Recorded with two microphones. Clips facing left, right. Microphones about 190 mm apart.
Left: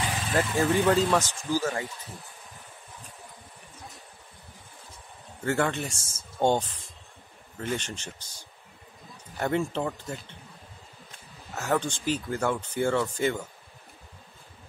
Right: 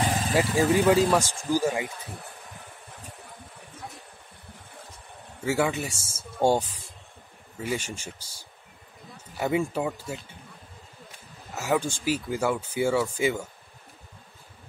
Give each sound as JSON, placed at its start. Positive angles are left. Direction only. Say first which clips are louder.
{"t": 0.0, "sound": "vehicle", "louder": "right 5 dB", "side_deg": -40}
{"t": 0.3, "sound": "speech", "louder": "right 2 dB", "side_deg": -10}
{"t": 5.4, "sound": "speech", "louder": "right 1 dB", "side_deg": -5}
{"t": 11.5, "sound": "speech", "louder": "right 1 dB", "side_deg": -10}